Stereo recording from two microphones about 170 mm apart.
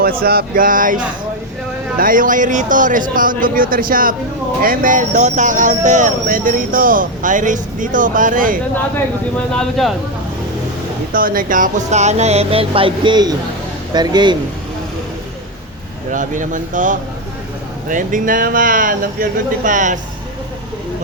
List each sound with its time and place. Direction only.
0.0 s speech: 60° right (ahead or behind)
9.5 s speech: 5° left (ahead or behind)
11.1 s speech: 55° right (ahead or behind); by 14.3 s 25° right (ahead or behind)
16.1 s speech: 50° right (ahead or behind)